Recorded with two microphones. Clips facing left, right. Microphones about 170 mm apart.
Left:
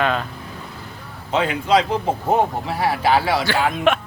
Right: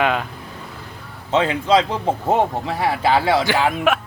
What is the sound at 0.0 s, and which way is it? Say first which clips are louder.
Speech: right 1 dB; 10° right (ahead or behind).